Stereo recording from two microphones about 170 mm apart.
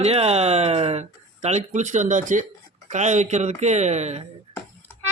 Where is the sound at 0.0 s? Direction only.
35° right (ahead or behind).